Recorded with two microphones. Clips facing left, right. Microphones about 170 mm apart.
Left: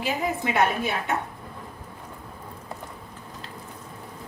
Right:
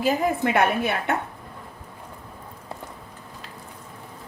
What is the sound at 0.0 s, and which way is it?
A woman's voice, 50° right (ahead or behind).